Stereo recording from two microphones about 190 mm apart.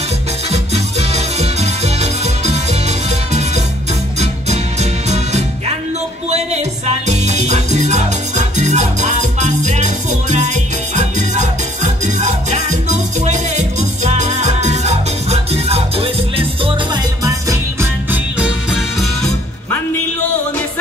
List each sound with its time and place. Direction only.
0.5 s music: 35° right (ahead or behind)
4.2 s music: 35° right (ahead or behind); by 19.0 s 5° right (ahead or behind)